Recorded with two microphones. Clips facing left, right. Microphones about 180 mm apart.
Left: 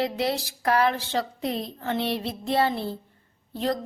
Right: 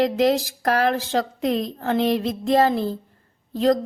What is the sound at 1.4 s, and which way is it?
Child singing, 90° right.